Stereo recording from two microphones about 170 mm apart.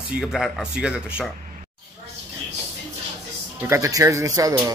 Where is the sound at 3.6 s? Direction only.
20° right (ahead or behind).